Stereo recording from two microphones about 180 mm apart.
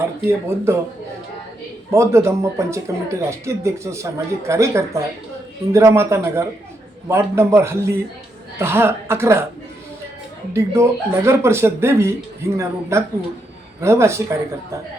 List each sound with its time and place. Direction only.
0.3 s speech: 15° right (ahead or behind)
1.9 s speech: 15° right (ahead or behind)
10.5 s speech: 15° right (ahead or behind)